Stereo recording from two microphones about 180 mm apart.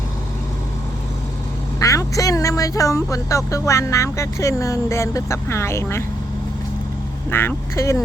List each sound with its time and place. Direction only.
1.8 s speech: 20° left (ahead or behind)
7.3 s speech: 10° left (ahead or behind)